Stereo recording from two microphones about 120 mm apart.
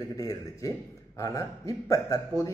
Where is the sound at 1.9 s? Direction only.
25° left (ahead or behind).